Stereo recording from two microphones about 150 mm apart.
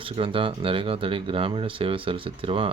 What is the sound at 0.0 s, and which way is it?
Speech, 35° right (ahead or behind).